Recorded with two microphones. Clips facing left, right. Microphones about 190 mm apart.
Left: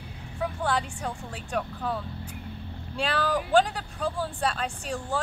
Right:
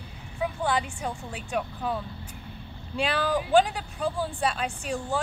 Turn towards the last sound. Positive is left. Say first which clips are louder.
# right 1 dB
turn(degrees=-5)  # may be behind; listen again after turning